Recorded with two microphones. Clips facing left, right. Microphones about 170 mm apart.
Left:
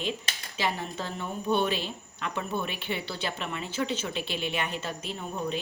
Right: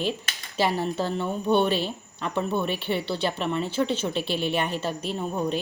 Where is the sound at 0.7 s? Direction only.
30° right (ahead or behind).